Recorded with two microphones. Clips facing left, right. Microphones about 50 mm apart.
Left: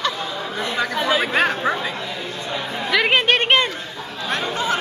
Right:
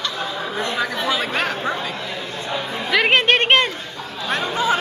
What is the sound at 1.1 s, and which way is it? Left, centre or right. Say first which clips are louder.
Chatter: left 3 dB; centre.